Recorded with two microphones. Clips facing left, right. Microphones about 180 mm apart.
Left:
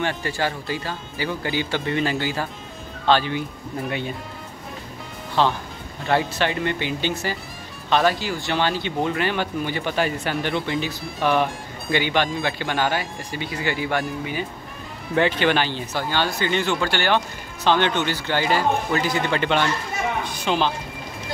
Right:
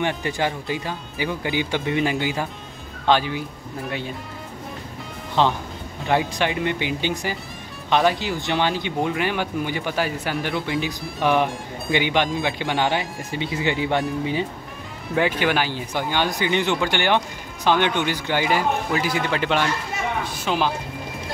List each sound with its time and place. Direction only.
0.0 s speech: 20° right (ahead or behind)
5.4 s speech: 20° right (ahead or behind)
15.1 s speech: 10° right (ahead or behind)